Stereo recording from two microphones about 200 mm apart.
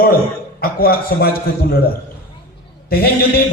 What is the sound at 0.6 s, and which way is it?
A man's voice, 50° left (ahead or behind).